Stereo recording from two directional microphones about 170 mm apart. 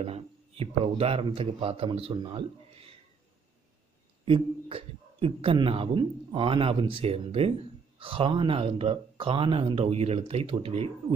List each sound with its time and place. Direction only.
0.0 s speech: 35° right (ahead or behind)
4.2 s a man's voice: 35° right (ahead or behind)